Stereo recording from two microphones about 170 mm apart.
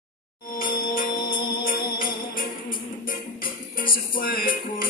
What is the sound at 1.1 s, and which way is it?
Music, 25° left (ahead or behind).